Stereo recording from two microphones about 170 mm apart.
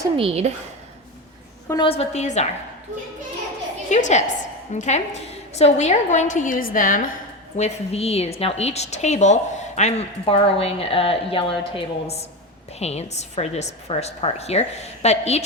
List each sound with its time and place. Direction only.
0.2 s a woman's voice: 35° right (ahead or behind)
1.6 s a woman's voice: 20° left (ahead or behind)
1.9 s a woman's voice: 40° left (ahead or behind)
3.8 s a woman's voice: 45° left (ahead or behind)
7.5 s a woman's voice: 40° left (ahead or behind)